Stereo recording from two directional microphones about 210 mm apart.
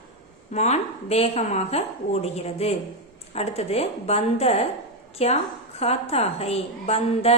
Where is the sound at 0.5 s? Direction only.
30° left (ahead or behind).